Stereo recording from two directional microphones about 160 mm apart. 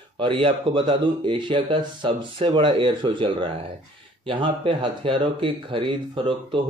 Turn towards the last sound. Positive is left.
turn(degrees=-30)  # may be behind; listen again after turning